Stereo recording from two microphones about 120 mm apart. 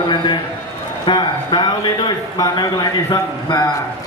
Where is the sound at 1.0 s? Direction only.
40° left (ahead or behind).